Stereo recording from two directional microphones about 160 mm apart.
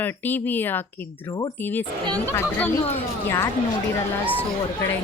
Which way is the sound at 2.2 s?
10° left (ahead or behind).